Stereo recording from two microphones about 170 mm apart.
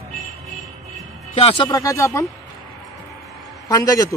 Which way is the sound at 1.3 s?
35° left (ahead or behind).